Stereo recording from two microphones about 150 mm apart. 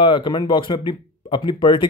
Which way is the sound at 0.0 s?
30° left (ahead or behind).